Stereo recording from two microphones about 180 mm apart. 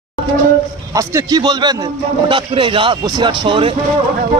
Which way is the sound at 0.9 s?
20° right (ahead or behind).